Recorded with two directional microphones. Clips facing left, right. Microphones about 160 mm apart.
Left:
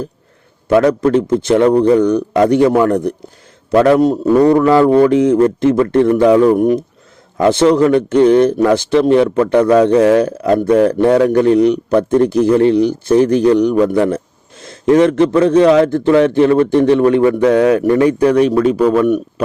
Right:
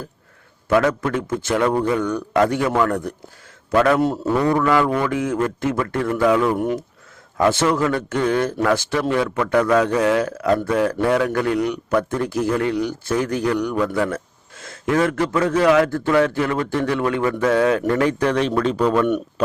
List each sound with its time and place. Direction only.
0.7 s a man's voice: 20° left (ahead or behind)
1.0 s a man's voice: 35° left (ahead or behind)
4.4 s speech: 35° left (ahead or behind)
5.1 s a man's voice: 20° left (ahead or behind)